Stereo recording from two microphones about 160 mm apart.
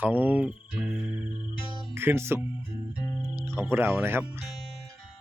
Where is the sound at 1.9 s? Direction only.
15° right (ahead or behind).